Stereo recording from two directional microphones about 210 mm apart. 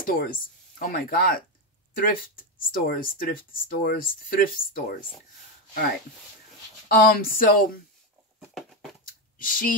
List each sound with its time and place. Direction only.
0.0 s speech: 40° left (ahead or behind)
6.9 s speech: 45° left (ahead or behind)
9.4 s speech: 40° left (ahead or behind)